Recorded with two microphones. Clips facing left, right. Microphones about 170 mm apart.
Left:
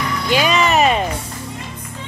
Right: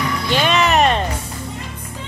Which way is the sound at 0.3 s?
5° left (ahead or behind).